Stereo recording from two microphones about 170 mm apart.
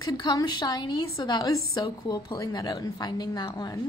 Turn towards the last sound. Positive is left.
turn(degrees=25)  # may be behind; listen again after turning